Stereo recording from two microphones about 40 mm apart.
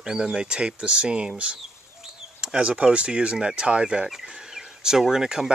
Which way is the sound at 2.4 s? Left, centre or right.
Right.